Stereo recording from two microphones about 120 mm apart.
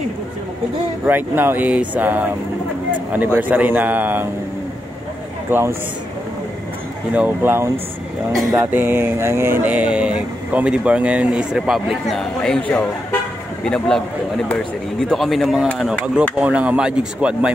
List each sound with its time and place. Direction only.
1.0 s speech: 15° right (ahead or behind)
5.5 s speech: 15° right (ahead or behind)
7.2 s speech: 15° right (ahead or behind)
8.7 s speech: 15° right (ahead or behind)